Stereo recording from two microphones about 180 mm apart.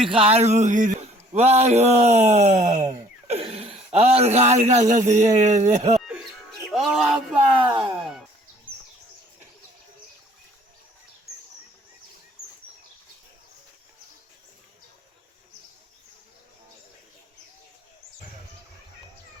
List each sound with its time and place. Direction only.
0.1 s speech: 35° right (ahead or behind)
6.7 s speech: centre (ahead or behind)